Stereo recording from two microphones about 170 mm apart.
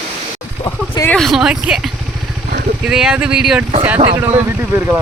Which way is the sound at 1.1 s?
Centre (ahead or behind).